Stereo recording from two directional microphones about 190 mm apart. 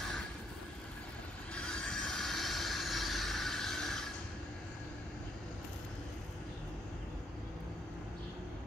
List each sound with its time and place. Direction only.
1.5 s train: 5° left (ahead or behind)